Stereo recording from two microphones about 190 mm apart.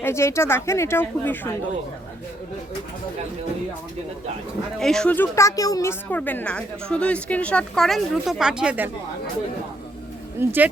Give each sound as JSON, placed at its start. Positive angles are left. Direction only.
{"t": 0.0, "sound": "speech", "side_deg": 15}
{"t": 4.8, "sound": "a woman's voice", "side_deg": 0}
{"t": 10.4, "sound": "speech", "side_deg": -10}